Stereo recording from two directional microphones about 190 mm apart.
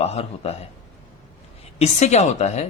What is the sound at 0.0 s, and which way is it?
Speech, 35° left (ahead or behind).